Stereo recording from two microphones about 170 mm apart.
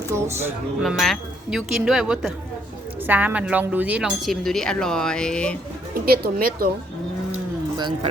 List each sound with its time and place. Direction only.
0.1 s music: 15° right (ahead or behind)
0.8 s speech: centre (ahead or behind)
6.1 s speech: 60° right (ahead or behind)